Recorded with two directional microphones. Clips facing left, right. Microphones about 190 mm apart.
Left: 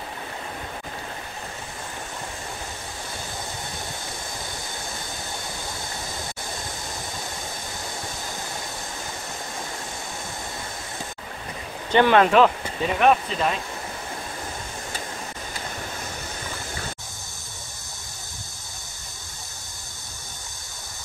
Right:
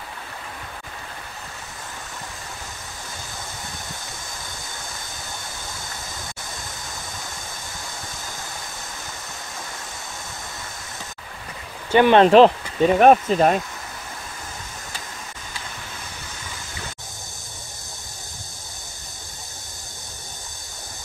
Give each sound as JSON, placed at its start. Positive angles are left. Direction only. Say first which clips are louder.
{"t": 11.9, "sound": "speech", "louder": "right 3 dB", "side_deg": -15}
{"t": 12.2, "sound": "speech", "louder": "right 5 dB", "side_deg": -30}